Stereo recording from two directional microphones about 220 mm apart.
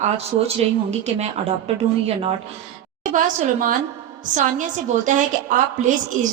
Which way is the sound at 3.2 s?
35° right (ahead or behind).